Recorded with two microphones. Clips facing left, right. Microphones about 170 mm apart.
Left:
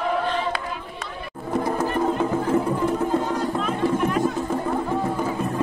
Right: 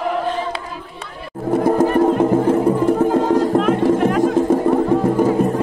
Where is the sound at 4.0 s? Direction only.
90° right.